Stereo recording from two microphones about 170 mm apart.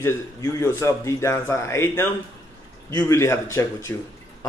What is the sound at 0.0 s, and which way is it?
A man's voice, 20° left (ahead or behind).